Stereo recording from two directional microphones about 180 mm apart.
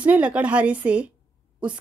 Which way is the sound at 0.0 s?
5° right (ahead or behind).